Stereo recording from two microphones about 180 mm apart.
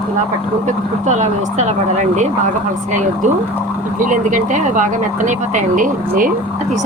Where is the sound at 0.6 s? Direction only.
40° right (ahead or behind).